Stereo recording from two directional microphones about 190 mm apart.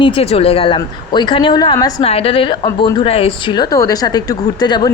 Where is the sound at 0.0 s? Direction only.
30° left (ahead or behind).